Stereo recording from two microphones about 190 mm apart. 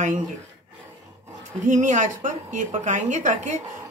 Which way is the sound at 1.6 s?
40° right (ahead or behind).